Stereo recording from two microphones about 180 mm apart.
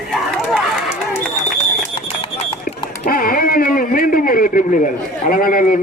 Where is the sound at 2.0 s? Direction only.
30° left (ahead or behind).